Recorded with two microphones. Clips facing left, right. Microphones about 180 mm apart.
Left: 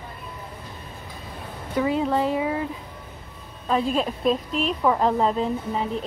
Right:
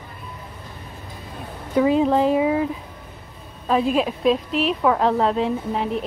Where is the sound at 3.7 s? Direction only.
10° right (ahead or behind).